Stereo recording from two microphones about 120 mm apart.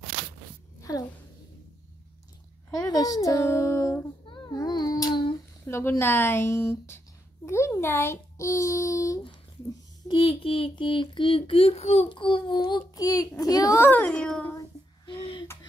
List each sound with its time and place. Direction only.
0.7 s a sound: 30° left (ahead or behind)
2.9 s speech: 30° left (ahead or behind)
4.3 s a sound: 35° left (ahead or behind)
5.7 s a child's voice: 20° left (ahead or behind)
10.0 s speech: 50° left (ahead or behind); by 13.8 s 30° left (ahead or behind)
13.8 s a child's voice: 10° left (ahead or behind)